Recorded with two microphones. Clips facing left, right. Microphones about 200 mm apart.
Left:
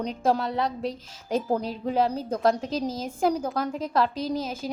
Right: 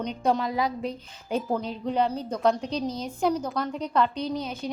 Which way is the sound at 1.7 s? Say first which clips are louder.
Left 1 dB; 5° left (ahead or behind).